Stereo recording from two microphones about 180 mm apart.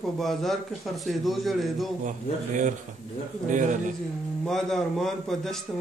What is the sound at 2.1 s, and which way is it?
Speech, 45° right (ahead or behind).